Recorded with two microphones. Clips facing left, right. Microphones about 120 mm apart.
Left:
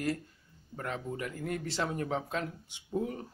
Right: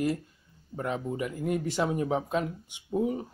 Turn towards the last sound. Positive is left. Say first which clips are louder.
# right 6 dB
turn(degrees=-20)  # may be behind; listen again after turning